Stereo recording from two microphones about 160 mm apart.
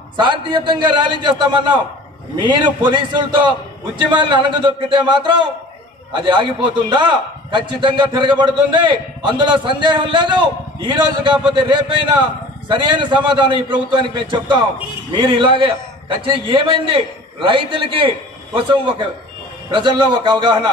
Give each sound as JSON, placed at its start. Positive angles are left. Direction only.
{"t": 0.2, "sound": "a man's voice", "side_deg": -30}